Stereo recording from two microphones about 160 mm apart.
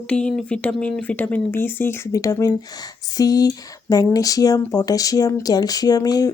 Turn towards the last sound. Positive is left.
turn(degrees=20)  # may be behind; listen again after turning